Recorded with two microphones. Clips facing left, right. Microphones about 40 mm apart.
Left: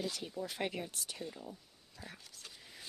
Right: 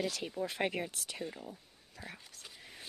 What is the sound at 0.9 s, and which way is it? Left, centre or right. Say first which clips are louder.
Speech: right 1 dB; right.